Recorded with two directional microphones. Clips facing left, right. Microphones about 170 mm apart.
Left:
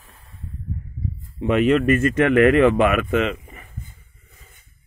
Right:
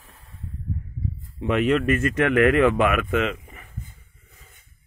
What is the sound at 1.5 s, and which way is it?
Speech, 5° left (ahead or behind).